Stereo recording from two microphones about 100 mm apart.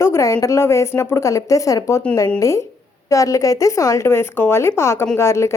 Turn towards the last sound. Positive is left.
turn(degrees=30)  # may be behind; listen again after turning